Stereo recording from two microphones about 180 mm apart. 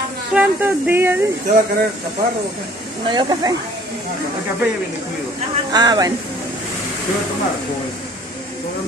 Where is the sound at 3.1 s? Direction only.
25° right (ahead or behind).